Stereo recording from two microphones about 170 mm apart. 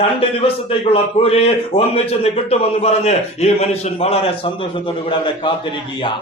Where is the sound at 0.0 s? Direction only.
35° left (ahead or behind).